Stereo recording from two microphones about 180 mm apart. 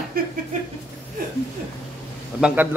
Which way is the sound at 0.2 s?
55° right (ahead or behind).